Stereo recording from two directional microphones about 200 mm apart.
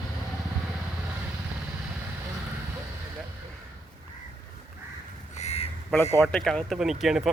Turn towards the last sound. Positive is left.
turn(degrees=0)  # may be behind; listen again after turning